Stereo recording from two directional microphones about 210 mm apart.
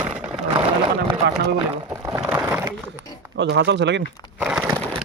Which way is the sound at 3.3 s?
55° right (ahead or behind).